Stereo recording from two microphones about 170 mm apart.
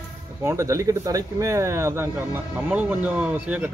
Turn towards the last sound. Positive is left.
turn(degrees=-10)  # may be behind; listen again after turning